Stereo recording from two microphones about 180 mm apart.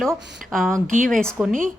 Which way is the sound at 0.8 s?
45° right (ahead or behind).